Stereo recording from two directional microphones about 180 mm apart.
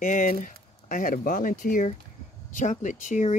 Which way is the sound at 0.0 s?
45° left (ahead or behind).